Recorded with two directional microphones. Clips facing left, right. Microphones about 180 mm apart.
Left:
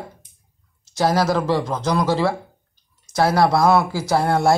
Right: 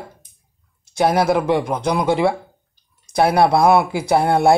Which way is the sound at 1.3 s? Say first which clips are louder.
Right 2 dB; 15° right (ahead or behind).